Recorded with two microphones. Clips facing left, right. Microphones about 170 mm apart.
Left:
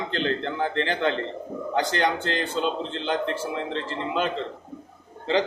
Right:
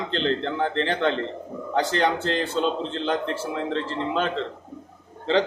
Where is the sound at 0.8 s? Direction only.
Centre (ahead or behind).